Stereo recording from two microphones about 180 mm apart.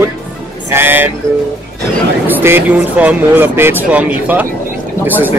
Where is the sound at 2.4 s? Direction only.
10° right (ahead or behind).